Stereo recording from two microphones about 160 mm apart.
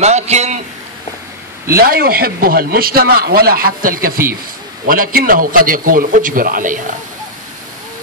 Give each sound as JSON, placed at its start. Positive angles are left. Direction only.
{"t": 0.0, "sound": "a man's voice", "side_deg": -45}
{"t": 1.8, "sound": "a man's voice", "side_deg": -70}